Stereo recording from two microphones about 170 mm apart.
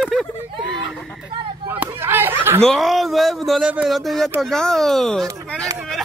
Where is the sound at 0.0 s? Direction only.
Centre (ahead or behind).